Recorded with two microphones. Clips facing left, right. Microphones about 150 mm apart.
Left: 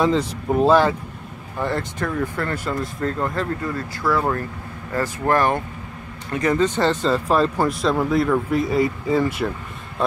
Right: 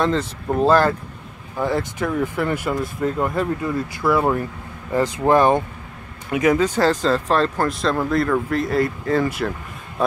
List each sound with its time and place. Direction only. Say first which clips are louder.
0.0 s speech: left 1 dB; 5° left (ahead or behind)